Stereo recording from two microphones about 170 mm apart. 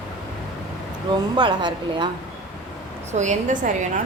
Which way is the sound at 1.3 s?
25° right (ahead or behind).